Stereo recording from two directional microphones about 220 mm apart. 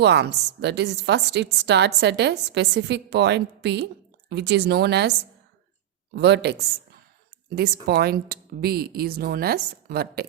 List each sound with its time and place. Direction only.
0.0 s a woman's voice: 50° right (ahead or behind)
6.1 s a woman's voice: 50° right (ahead or behind)